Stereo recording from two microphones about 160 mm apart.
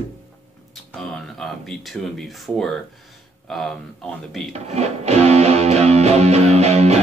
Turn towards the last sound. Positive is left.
turn(degrees=-40)  # may be behind; listen again after turning